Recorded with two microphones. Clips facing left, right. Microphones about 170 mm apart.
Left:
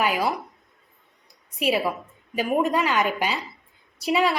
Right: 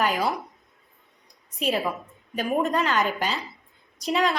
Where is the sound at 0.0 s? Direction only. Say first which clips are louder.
Left 1 dB; 5° left (ahead or behind).